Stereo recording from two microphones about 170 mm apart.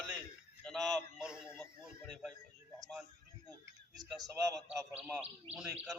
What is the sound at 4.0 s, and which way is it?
A man's voice, centre (ahead or behind).